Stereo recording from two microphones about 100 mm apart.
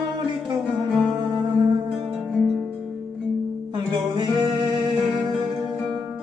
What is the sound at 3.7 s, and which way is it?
Music, 50° right (ahead or behind).